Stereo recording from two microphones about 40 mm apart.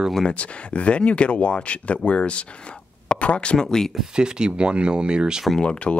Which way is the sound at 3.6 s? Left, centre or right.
Centre.